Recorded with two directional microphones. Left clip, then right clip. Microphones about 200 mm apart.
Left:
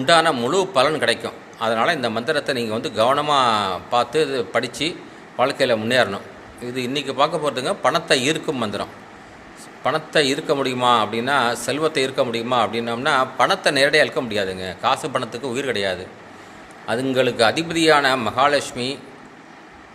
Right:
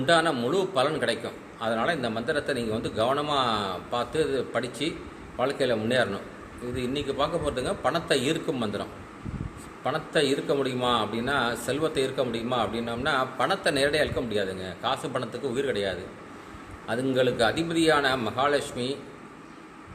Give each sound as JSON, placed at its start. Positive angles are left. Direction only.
{"t": 0.0, "sound": "a man's voice", "side_deg": 15}